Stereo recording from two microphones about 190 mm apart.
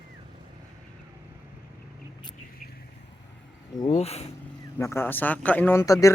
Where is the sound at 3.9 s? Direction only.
35° left (ahead or behind).